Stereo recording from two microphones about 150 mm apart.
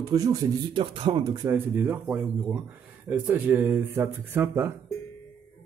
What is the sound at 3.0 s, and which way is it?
Speech, 10° right (ahead or behind).